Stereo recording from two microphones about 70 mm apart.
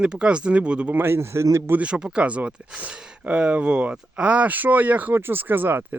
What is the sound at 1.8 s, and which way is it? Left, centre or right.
Speech, centre.